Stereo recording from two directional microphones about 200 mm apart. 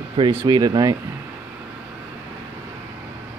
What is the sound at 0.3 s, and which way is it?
Speech, 15° right (ahead or behind).